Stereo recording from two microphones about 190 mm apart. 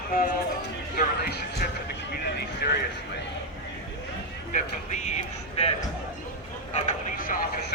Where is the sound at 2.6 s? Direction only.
55° left (ahead or behind).